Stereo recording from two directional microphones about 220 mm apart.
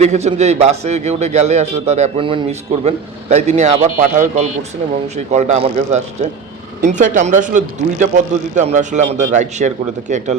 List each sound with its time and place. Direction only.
0.0 s a man's voice: 30° right (ahead or behind)